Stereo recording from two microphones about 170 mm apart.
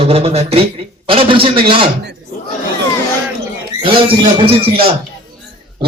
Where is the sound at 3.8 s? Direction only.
35° right (ahead or behind).